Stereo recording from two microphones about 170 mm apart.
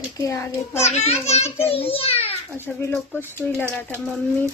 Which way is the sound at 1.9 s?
35° left (ahead or behind).